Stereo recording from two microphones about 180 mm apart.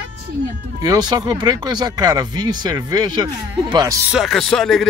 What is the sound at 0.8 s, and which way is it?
Speech, 20° right (ahead or behind).